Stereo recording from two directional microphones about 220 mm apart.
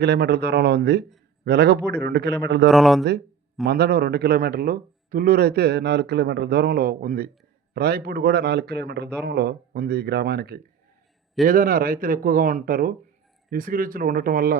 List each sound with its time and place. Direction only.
0.0 s speech: 45° right (ahead or behind)
2.6 s speech: centre (ahead or behind)
3.7 s a man's voice: 45° right (ahead or behind)